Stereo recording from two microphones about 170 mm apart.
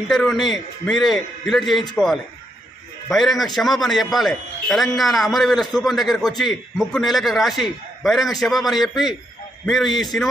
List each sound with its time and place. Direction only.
0.1 s a man's voice: centre (ahead or behind)